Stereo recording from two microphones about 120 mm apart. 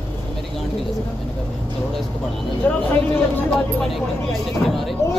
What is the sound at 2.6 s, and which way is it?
Speech, 15° left (ahead or behind).